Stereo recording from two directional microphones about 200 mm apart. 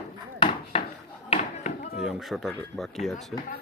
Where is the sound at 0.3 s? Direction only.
30° left (ahead or behind).